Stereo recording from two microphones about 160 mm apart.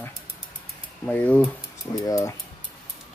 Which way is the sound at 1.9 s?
20° left (ahead or behind).